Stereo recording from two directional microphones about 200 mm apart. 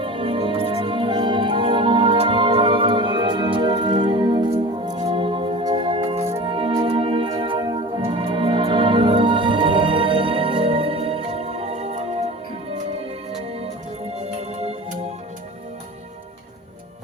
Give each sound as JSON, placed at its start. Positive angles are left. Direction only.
{"t": 0.0, "sound": "music", "side_deg": -25}
{"t": 13.6, "sound": "music", "side_deg": -30}